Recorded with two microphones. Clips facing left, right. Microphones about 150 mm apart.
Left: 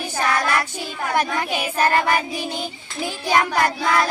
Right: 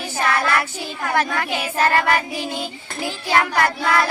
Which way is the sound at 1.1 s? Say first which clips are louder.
Even; 15° left (ahead or behind).